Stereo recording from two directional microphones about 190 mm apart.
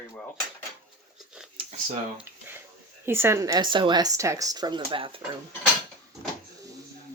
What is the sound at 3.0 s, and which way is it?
Speech, 10° right (ahead or behind).